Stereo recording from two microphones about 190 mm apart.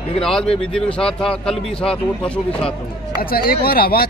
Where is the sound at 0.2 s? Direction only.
5° left (ahead or behind).